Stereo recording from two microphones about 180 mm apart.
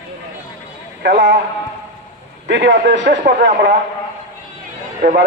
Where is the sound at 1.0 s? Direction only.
50° right (ahead or behind).